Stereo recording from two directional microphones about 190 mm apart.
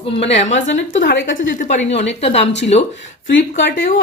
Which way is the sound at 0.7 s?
75° left (ahead or behind).